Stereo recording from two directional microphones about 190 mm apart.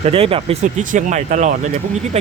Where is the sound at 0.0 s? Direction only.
30° right (ahead or behind).